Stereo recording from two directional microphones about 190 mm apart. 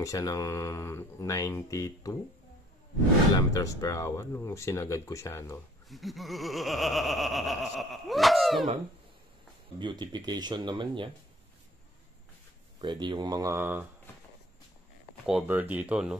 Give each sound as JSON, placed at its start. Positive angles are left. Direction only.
{"t": 0.0, "sound": "speech", "side_deg": 15}
{"t": 3.3, "sound": "speech", "side_deg": 15}
{"t": 5.9, "sound": "laughter", "side_deg": 0}
{"t": 9.8, "sound": "speech", "side_deg": -25}
{"t": 12.8, "sound": "speech", "side_deg": -25}
{"t": 15.2, "sound": "speech", "side_deg": -5}